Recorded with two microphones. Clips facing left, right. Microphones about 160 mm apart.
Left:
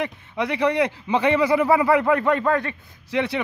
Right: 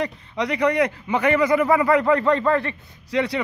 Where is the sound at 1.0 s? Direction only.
15° left (ahead or behind).